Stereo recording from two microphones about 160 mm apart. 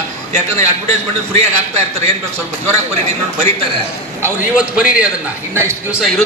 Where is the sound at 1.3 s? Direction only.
40° right (ahead or behind).